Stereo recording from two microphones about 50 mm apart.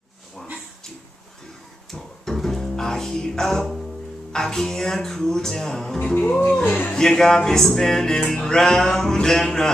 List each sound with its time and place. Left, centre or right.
1.9 s music: centre
6.1 s speech: left
6.9 s music: centre